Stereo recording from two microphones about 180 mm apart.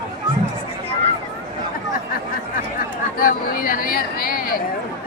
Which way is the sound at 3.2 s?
55° left (ahead or behind).